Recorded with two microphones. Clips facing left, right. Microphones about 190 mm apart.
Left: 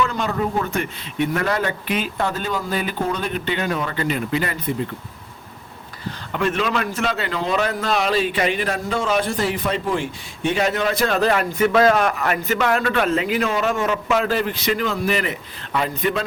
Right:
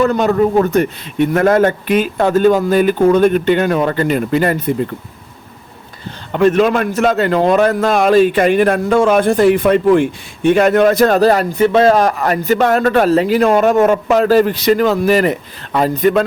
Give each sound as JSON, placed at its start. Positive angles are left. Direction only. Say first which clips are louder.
{"t": 0.0, "sound": "a man's voice", "louder": "right 10 dB", "side_deg": -45}
{"t": 6.3, "sound": "a man's voice", "louder": "right 10 dB", "side_deg": -40}
{"t": 13.5, "sound": "a man's voice", "louder": "right 10 dB", "side_deg": -50}